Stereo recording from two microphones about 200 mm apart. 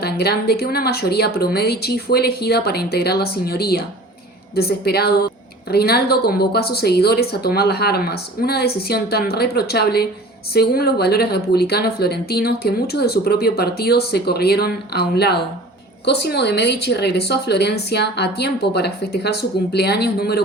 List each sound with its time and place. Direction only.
0.0 s a woman's voice: 55° left (ahead or behind)